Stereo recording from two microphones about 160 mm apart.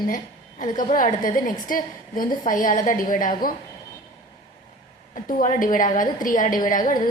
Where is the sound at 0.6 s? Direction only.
45° left (ahead or behind).